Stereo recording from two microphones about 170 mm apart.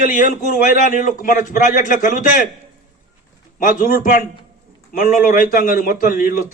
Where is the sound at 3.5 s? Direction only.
55° left (ahead or behind).